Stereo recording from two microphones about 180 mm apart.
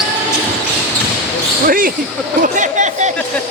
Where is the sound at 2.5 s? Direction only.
45° right (ahead or behind).